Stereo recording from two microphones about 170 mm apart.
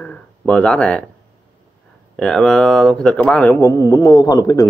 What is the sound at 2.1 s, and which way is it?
Speech, 5° left (ahead or behind).